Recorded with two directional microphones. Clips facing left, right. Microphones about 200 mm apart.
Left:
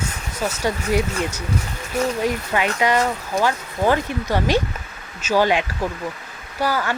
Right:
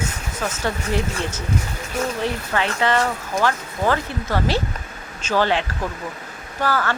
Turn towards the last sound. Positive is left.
turn(degrees=15)  # may be behind; listen again after turning